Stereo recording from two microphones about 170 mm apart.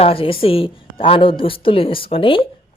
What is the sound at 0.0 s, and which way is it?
A woman's voice, 35° left (ahead or behind).